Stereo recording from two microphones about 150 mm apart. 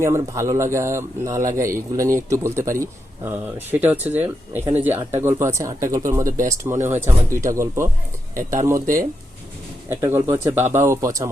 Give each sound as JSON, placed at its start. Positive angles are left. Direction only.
{"t": 0.0, "sound": "speech", "side_deg": -20}
{"t": 8.4, "sound": "speech", "side_deg": -60}
{"t": 8.6, "sound": "speech", "side_deg": -20}